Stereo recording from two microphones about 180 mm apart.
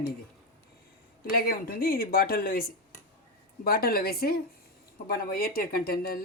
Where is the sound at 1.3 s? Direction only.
55° left (ahead or behind).